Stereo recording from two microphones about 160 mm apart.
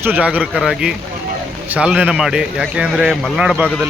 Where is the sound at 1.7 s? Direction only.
5° right (ahead or behind).